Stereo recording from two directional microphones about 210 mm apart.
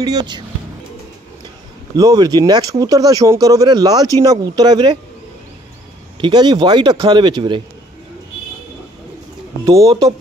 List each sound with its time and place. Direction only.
0.0 s speech: 20° right (ahead or behind)
2.0 s speech: 20° right (ahead or behind)
6.2 s speech: 20° right (ahead or behind)
9.7 s speech: 15° right (ahead or behind)